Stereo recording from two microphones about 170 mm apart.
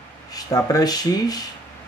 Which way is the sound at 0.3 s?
20° left (ahead or behind).